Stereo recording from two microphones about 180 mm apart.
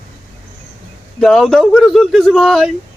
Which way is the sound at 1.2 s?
Centre (ahead or behind).